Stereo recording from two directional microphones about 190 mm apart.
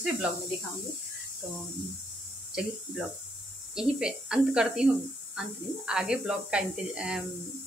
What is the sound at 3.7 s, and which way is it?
Speech, 5° right (ahead or behind).